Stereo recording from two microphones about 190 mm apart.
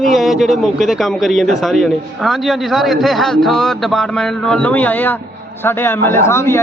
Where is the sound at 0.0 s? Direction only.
Centre (ahead or behind).